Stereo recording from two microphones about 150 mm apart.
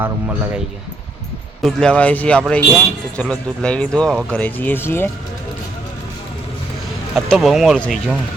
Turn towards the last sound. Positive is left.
turn(degrees=5)  # may be behind; listen again after turning